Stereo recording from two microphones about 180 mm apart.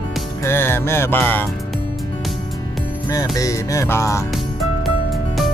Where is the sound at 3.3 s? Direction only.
20° left (ahead or behind).